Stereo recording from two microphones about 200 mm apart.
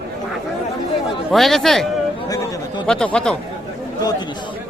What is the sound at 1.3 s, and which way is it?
Speech, centre (ahead or behind).